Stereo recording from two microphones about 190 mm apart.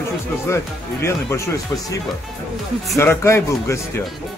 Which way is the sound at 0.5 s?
15° left (ahead or behind).